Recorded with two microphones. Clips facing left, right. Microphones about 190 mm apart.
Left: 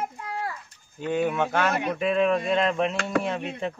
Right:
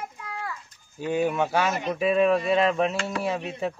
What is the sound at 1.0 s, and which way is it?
Speech, 10° right (ahead or behind).